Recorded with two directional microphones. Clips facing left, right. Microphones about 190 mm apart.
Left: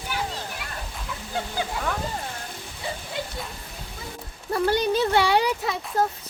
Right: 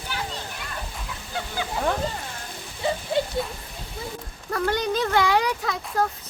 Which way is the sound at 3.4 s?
Centre (ahead or behind).